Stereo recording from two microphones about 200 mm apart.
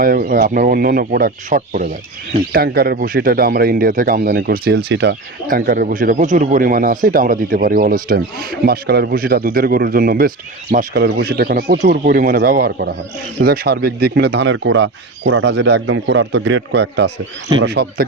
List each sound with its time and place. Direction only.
0.0 s speech: 45° right (ahead or behind)